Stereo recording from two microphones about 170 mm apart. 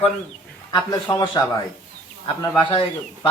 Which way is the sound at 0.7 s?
25° left (ahead or behind).